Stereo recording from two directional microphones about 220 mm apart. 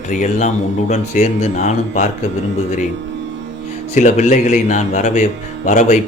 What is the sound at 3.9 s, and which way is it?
Speech, 30° left (ahead or behind).